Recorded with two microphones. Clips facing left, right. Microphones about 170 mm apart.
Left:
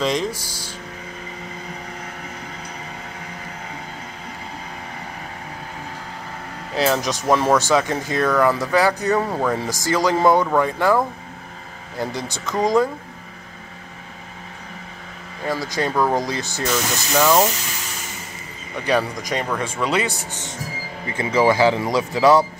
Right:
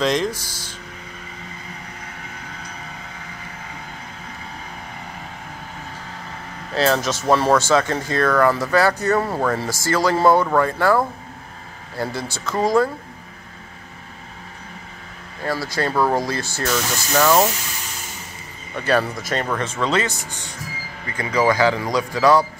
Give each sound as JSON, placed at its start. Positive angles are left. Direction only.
{"t": 0.0, "sound": "speech", "side_deg": 10}
{"t": 6.7, "sound": "speech", "side_deg": 15}
{"t": 12.0, "sound": "speech", "side_deg": 15}
{"t": 15.4, "sound": "speech", "side_deg": 15}
{"t": 15.9, "sound": "speech", "side_deg": -5}
{"t": 16.2, "sound": "speech", "side_deg": 15}
{"t": 18.9, "sound": "speech", "side_deg": 15}
{"t": 21.1, "sound": "speech", "side_deg": 25}